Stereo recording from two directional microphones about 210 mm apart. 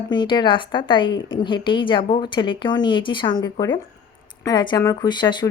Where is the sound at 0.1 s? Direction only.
20° left (ahead or behind).